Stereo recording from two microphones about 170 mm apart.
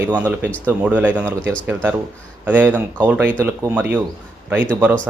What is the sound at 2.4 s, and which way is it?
Speech, 10° right (ahead or behind).